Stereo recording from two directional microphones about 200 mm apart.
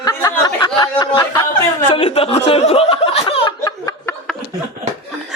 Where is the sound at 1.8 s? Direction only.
25° left (ahead or behind).